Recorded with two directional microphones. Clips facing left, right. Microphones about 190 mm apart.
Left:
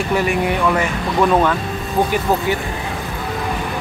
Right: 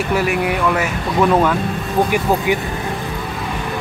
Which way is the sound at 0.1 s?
5° right (ahead or behind).